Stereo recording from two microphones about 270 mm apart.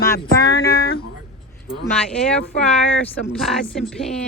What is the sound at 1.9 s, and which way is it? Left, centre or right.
Speech, centre.